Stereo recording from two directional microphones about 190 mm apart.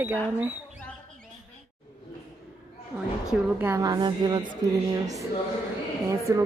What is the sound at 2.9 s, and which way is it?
A woman's voice, 5° right (ahead or behind).